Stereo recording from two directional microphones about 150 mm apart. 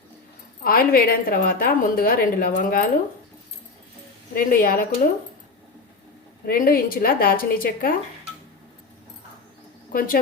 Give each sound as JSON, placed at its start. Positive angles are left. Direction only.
{"t": 0.6, "sound": "a woman's voice", "side_deg": 75}
{"t": 4.4, "sound": "a woman's voice", "side_deg": 70}
{"t": 6.4, "sound": "a woman's voice", "side_deg": 75}
{"t": 9.9, "sound": "a woman's voice", "side_deg": 70}